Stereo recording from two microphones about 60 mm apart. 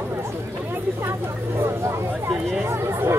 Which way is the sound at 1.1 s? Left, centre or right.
Right.